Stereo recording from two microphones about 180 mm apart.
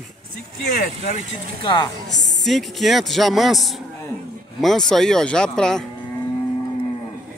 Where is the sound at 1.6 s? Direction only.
25° left (ahead or behind).